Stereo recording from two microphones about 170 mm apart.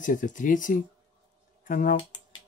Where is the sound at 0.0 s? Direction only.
50° left (ahead or behind).